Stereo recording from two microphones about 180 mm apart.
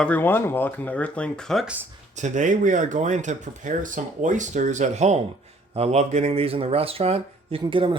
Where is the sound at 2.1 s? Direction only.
45° right (ahead or behind).